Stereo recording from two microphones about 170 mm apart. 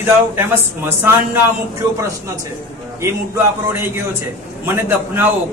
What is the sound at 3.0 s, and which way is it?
A man's voice, 15° right (ahead or behind).